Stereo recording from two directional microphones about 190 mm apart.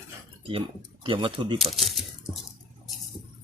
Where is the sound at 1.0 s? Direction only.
25° right (ahead or behind).